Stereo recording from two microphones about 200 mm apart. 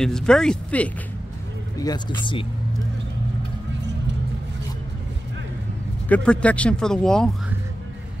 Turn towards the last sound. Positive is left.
turn(degrees=5)  # may be behind; listen again after turning